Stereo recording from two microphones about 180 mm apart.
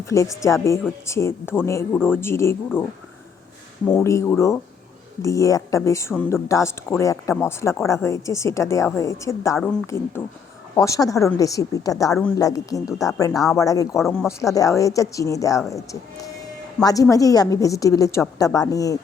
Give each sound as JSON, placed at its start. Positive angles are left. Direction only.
{"t": 0.0, "sound": "speech", "side_deg": 15}
{"t": 3.8, "sound": "speech", "side_deg": 15}
{"t": 14.0, "sound": "speech", "side_deg": 0}
{"t": 14.3, "sound": "speech", "side_deg": 20}